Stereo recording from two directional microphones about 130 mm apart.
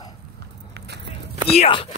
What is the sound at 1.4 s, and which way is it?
Speech, 50° left (ahead or behind).